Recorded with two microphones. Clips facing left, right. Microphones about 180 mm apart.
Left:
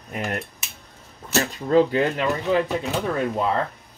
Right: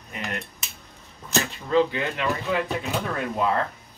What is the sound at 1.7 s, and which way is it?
Speech, 45° left (ahead or behind).